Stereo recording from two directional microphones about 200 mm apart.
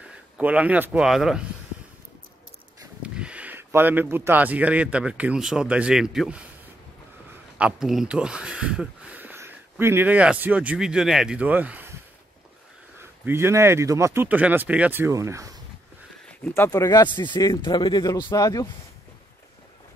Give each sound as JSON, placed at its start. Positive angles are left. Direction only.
{"t": 0.4, "sound": "speech", "side_deg": -5}
{"t": 3.0, "sound": "speech", "side_deg": -5}
{"t": 7.5, "sound": "speech", "side_deg": -5}
{"t": 13.2, "sound": "speech", "side_deg": -10}
{"t": 16.3, "sound": "speech", "side_deg": 10}